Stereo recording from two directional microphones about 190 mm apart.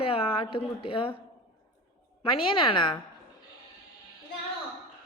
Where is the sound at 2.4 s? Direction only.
25° left (ahead or behind).